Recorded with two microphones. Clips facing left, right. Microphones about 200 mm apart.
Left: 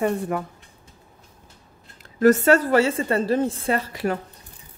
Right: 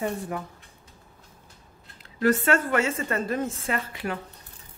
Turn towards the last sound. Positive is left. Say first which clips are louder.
# left 6 dB
turn(degrees=40)  # may be behind; listen again after turning